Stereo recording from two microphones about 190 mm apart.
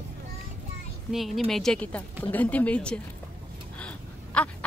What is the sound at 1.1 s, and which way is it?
A woman's voice, centre (ahead or behind).